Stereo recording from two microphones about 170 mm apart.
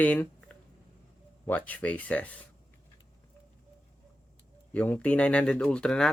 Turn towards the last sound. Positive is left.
turn(degrees=5)  # may be behind; listen again after turning